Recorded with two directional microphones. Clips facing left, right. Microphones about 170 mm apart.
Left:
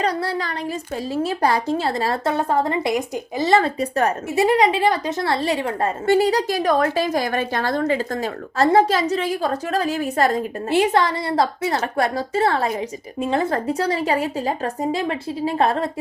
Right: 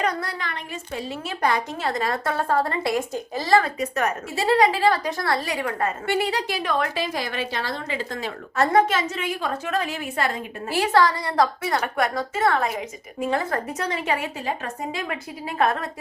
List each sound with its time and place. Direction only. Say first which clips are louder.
0.0 s a woman's voice: left 4 dB; 30° left (ahead or behind)
4.4 s a woman's voice: left 2 dB; 20° left (ahead or behind); by 10.4 s 40° left (ahead or behind)
10.7 s a woman's voice: left 2 dB; 25° left (ahead or behind)